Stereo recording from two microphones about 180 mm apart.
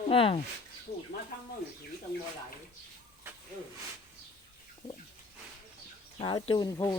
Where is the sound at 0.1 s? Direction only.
30° left (ahead or behind).